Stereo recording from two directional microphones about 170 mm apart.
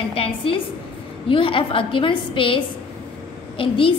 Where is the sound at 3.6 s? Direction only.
30° left (ahead or behind).